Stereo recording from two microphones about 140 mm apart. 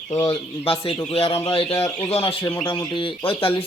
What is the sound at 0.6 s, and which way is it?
Speech, 45° left (ahead or behind).